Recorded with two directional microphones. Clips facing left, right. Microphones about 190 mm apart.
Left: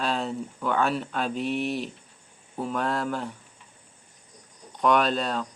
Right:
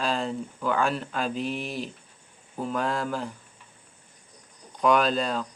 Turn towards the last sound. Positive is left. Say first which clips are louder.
# even
turn(degrees=0)  # may be behind; listen again after turning